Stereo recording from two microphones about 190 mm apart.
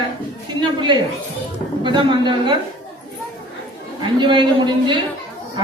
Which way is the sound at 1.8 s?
25° right (ahead or behind).